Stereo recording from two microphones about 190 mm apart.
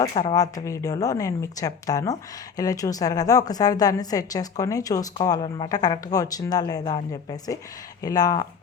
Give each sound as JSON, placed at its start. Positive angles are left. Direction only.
{"t": 0.0, "sound": "a woman's voice", "side_deg": 25}